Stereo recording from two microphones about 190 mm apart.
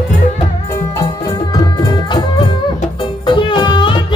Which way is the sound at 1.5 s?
20° left (ahead or behind).